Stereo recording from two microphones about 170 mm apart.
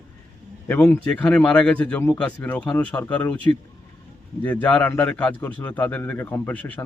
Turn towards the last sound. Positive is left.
turn(degrees=10)  # may be behind; listen again after turning